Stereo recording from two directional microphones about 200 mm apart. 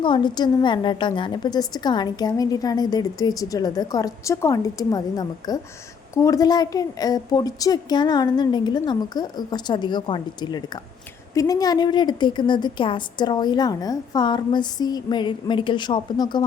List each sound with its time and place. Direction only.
0.0 s a woman's voice: 25° left (ahead or behind)